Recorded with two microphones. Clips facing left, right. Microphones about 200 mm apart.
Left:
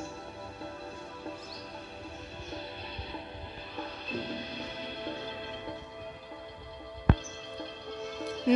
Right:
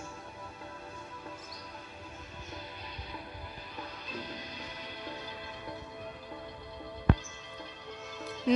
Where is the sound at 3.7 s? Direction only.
30° left (ahead or behind).